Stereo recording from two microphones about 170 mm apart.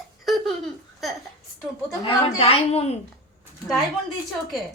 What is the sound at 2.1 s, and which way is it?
Speech, 35° left (ahead or behind).